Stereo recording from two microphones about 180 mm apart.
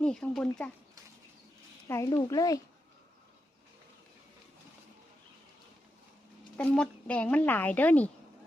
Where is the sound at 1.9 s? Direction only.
15° left (ahead or behind).